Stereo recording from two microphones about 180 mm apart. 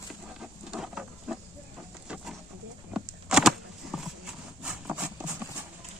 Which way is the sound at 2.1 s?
5° right (ahead or behind).